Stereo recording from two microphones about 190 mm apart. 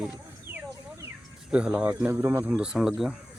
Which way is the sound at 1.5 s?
5° right (ahead or behind).